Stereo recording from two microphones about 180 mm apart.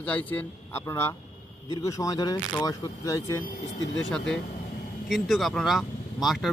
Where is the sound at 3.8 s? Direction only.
90° left.